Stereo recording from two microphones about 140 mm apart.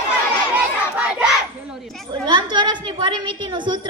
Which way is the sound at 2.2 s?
30° right (ahead or behind).